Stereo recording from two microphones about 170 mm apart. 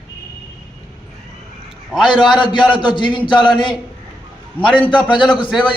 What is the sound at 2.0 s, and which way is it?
A man's voice, 25° left (ahead or behind).